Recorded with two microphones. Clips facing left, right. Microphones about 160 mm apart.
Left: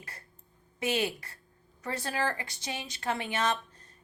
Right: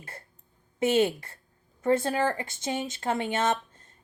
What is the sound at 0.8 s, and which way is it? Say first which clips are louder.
A woman's voice: right 7 dB; 25° right (ahead or behind).